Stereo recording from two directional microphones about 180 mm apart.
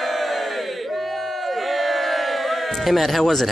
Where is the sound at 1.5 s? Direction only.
Centre (ahead or behind).